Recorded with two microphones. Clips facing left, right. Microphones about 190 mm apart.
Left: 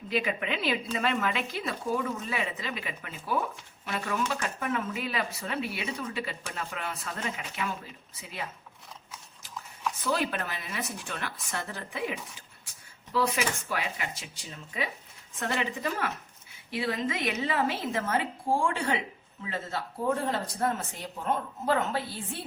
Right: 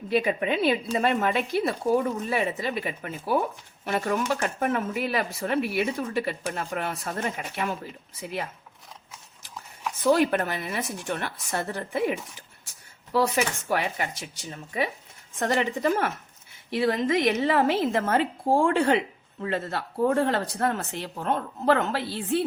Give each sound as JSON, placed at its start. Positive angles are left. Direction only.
{"t": 0.3, "sound": "speech", "side_deg": -40}
{"t": 10.0, "sound": "speech", "side_deg": -50}
{"t": 15.4, "sound": "a woman's voice", "side_deg": -50}